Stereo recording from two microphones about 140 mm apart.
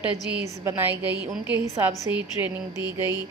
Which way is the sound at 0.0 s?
10° right (ahead or behind).